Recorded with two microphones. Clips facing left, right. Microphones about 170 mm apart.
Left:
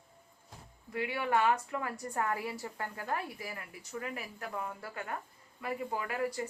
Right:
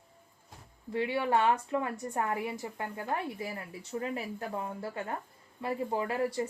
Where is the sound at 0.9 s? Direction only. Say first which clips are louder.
Right 3 dB; 25° right (ahead or behind).